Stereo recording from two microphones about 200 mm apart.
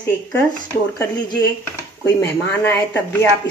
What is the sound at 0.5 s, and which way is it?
Speech, 15° left (ahead or behind).